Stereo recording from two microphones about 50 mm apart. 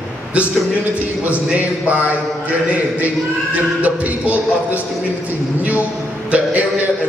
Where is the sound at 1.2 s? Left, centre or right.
Right.